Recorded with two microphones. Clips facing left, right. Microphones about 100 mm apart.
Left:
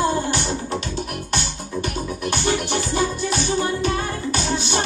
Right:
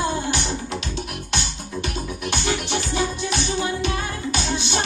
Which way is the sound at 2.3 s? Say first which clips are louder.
Left 3 dB; 50° left (ahead or behind).